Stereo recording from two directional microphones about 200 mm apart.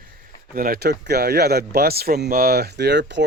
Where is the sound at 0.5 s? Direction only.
50° right (ahead or behind).